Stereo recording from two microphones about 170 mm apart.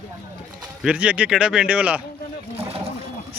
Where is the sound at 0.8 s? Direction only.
10° right (ahead or behind).